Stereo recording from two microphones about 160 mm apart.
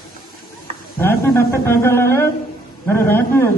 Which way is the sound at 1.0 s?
15° left (ahead or behind).